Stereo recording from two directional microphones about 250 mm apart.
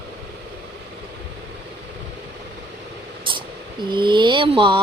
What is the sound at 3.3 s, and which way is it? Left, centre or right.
Speech, centre.